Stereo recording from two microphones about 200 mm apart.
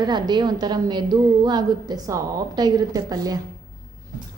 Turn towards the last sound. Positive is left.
turn(degrees=-20)  # may be behind; listen again after turning